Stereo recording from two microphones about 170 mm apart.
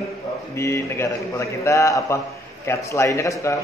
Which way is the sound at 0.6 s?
15° left (ahead or behind).